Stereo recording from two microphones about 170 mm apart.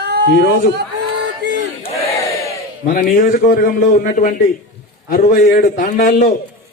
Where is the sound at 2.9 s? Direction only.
55° left (ahead or behind).